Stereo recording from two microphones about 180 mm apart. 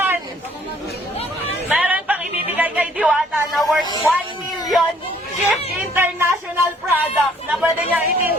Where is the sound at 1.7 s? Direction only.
10° right (ahead or behind).